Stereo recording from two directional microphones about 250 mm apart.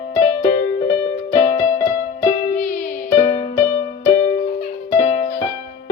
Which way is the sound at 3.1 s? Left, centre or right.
Left.